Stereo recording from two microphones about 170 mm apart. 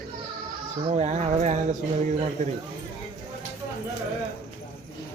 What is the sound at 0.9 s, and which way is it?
Speech, 40° right (ahead or behind).